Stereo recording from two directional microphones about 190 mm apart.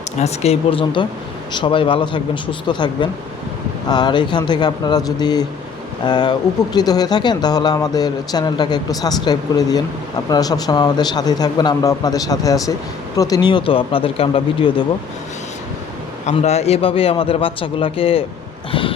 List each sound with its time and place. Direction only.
0.2 s speech: 35° left (ahead or behind)
16.2 s speech: 35° left (ahead or behind)
18.7 s a sound: 25° left (ahead or behind)